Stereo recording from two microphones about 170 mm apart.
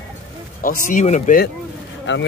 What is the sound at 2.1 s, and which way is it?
Speech, 90° left.